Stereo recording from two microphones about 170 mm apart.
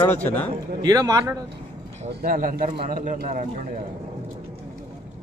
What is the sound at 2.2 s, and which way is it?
A man's voice, 55° right (ahead or behind).